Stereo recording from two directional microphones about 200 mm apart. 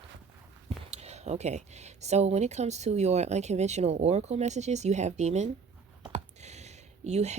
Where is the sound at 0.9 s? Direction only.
35° right (ahead or behind).